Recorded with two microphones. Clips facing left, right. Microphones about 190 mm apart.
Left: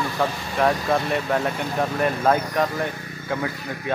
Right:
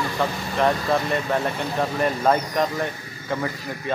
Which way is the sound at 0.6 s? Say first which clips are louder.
Even; 5° left (ahead or behind).